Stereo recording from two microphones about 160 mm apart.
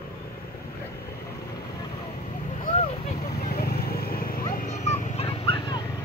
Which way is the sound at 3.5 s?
75° left (ahead or behind).